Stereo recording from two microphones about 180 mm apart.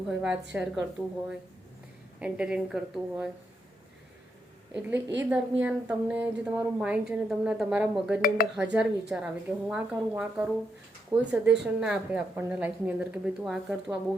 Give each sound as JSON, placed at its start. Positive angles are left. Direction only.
{"t": 0.1, "sound": "speech", "side_deg": -5}
{"t": 2.1, "sound": "speech", "side_deg": -5}
{"t": 4.7, "sound": "speech", "side_deg": -10}
{"t": 8.4, "sound": "speech", "side_deg": 50}
{"t": 8.7, "sound": "speech", "side_deg": -5}